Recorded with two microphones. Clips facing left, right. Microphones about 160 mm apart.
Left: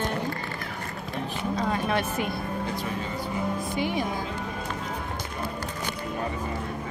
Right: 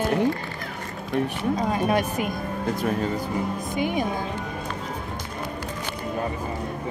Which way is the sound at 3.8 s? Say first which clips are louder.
Right 4 dB; 15° right (ahead or behind).